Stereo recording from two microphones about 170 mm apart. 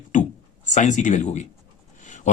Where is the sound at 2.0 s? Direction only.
45° left (ahead or behind).